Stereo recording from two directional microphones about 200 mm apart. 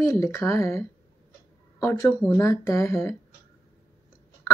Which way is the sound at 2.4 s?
15° left (ahead or behind).